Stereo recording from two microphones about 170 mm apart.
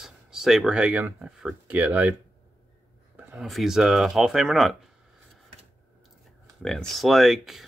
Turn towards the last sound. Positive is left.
turn(degrees=0)  # may be behind; listen again after turning